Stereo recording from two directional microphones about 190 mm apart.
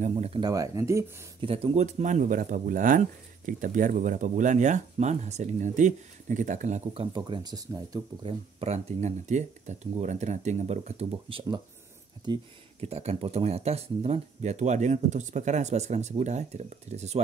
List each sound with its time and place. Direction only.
0.0 s speech: 30° right (ahead or behind); by 1.1 s 15° right (ahead or behind)
1.4 s speech: 30° right (ahead or behind)